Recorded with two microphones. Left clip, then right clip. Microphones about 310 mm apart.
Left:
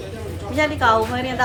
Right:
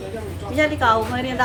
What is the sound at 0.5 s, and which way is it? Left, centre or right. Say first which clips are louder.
Speech: left 1 dB; centre.